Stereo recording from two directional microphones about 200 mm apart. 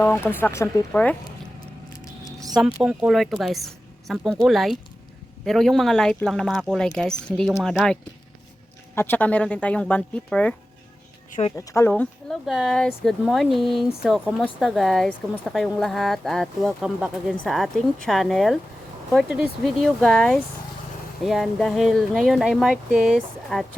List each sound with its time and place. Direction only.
0.0 s speech: 10° left (ahead or behind)
2.8 s speech: 5° right (ahead or behind)
9.0 s speech: 10° left (ahead or behind)
11.3 s speech: 30° left (ahead or behind)
11.5 s speech: 15° left (ahead or behind)